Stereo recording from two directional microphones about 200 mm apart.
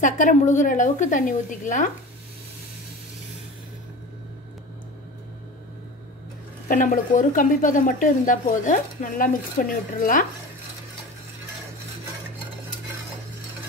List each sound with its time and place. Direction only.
0.0 s a woman's voice: 40° left (ahead or behind)
6.7 s a woman's voice: 40° left (ahead or behind)